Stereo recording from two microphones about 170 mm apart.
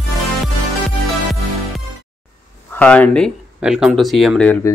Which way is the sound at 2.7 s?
10° left (ahead or behind).